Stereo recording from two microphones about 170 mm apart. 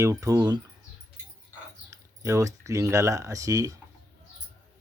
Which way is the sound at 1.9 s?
20° right (ahead or behind).